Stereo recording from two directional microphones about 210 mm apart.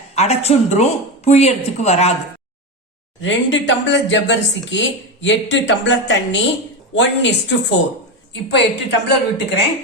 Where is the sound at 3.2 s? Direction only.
60° left (ahead or behind).